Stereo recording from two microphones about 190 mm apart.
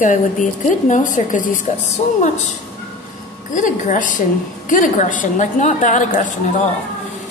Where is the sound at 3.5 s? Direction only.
40° left (ahead or behind).